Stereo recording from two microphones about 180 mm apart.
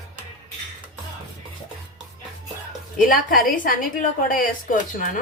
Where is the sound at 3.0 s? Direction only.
50° left (ahead or behind).